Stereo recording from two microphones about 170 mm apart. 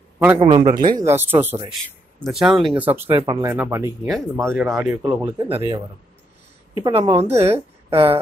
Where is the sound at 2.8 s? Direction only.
10° right (ahead or behind).